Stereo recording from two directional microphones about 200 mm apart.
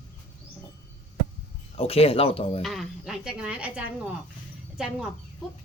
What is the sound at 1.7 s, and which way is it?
Speech, 30° left (ahead or behind).